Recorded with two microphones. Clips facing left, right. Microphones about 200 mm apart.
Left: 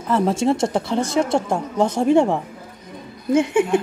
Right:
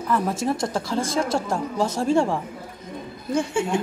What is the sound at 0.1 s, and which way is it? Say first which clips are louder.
A woman's voice: left 5 dB; 25° left (ahead or behind).